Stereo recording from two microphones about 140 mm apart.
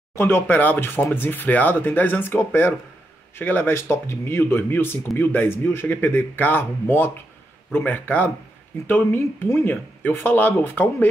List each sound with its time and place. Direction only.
0.1 s speech: 15° left (ahead or behind)